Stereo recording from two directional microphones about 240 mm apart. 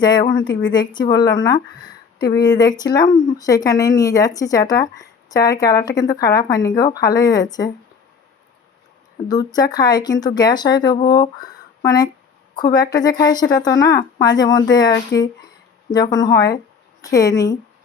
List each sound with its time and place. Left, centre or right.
0.0 s speech: centre
9.3 s speech: centre